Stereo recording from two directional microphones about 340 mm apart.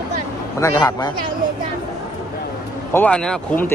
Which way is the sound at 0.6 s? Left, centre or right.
Centre.